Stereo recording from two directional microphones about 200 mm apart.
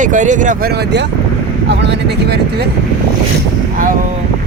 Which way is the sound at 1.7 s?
60° right (ahead or behind).